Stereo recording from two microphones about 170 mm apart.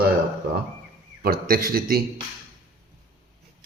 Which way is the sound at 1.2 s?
60° right (ahead or behind).